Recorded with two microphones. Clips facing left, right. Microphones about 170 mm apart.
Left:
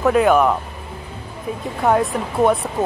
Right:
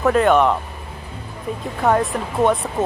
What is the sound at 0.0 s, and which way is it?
Speech, centre (ahead or behind).